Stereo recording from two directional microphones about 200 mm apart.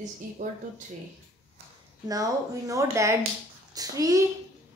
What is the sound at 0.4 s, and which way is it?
Speech, 40° right (ahead or behind).